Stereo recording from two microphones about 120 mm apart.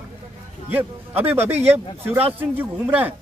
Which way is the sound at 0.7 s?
15° right (ahead or behind).